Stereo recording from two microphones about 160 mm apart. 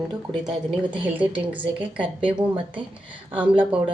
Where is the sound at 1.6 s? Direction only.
30° right (ahead or behind).